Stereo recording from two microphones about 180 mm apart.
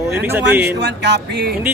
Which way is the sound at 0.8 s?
70° right (ahead or behind).